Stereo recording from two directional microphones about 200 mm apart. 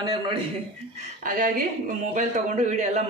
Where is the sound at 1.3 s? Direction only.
40° right (ahead or behind).